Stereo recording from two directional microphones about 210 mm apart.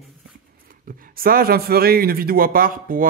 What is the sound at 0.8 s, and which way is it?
Speech, 45° right (ahead or behind).